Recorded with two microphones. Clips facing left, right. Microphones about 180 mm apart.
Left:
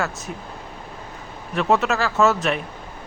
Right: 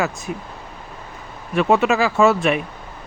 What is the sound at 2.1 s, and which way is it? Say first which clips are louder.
Speech: right 1 dB; 15° right (ahead or behind).